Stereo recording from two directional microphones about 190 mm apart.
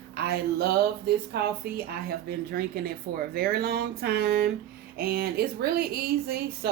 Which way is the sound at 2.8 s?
50° right (ahead or behind).